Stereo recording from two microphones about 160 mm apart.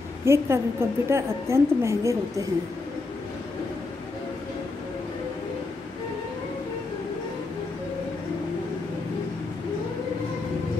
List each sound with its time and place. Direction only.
0.2 s a woman's voice: 15° right (ahead or behind)